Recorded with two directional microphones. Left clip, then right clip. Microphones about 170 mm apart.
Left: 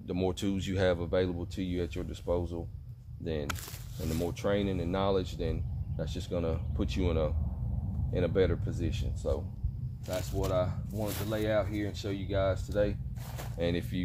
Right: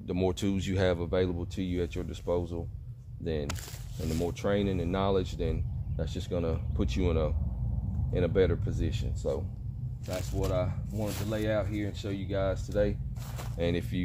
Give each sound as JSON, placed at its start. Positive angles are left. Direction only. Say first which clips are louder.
{"t": 0.1, "sound": "speech", "louder": "right 2 dB", "side_deg": -40}
{"t": 4.0, "sound": "speech", "louder": "right 2 dB", "side_deg": 0}
{"t": 4.3, "sound": "speech", "louder": "right 1 dB", "side_deg": -35}
{"t": 10.0, "sound": "speech", "louder": "even", "side_deg": -10}
{"t": 10.5, "sound": "speech", "louder": "left 3 dB", "side_deg": -30}
{"t": 12.7, "sound": "speech", "louder": "right 1 dB", "side_deg": -35}